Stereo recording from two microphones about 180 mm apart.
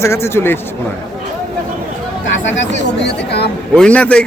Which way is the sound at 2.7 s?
70° left (ahead or behind).